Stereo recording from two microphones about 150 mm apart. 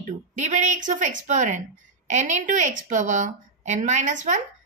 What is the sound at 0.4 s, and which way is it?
A woman's voice, 55° right (ahead or behind).